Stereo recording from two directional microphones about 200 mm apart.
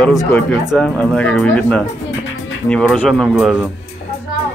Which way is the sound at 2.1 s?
70° left (ahead or behind).